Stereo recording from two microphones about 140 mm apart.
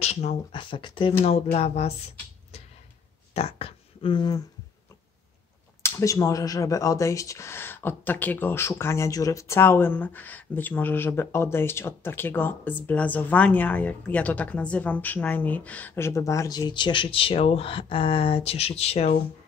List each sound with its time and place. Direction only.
0.0 s speech: 50° left (ahead or behind)
0.5 s speech: 35° left (ahead or behind)
1.2 s speech: 50° left (ahead or behind)
3.3 s speech: 45° left (ahead or behind)
5.8 s speech: 20° left (ahead or behind); by 19.1 s 50° left (ahead or behind)